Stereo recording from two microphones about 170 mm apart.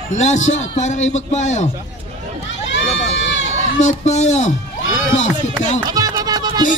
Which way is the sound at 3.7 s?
45° left (ahead or behind).